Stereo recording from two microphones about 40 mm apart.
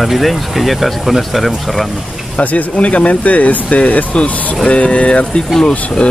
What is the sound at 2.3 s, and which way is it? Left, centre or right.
Speech, left.